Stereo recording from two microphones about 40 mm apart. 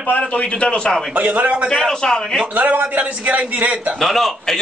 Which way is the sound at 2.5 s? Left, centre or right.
Right.